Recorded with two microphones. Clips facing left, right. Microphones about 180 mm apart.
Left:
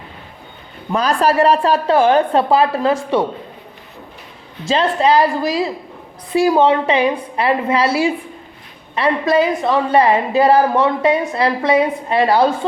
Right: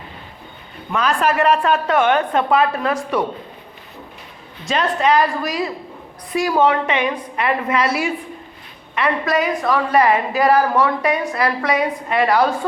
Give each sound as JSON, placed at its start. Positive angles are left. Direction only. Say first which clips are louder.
{"t": 0.9, "sound": "a woman's voice", "louder": "left 3 dB", "side_deg": 35}
{"t": 4.6, "sound": "a woman's voice", "louder": "left 3 dB", "side_deg": 30}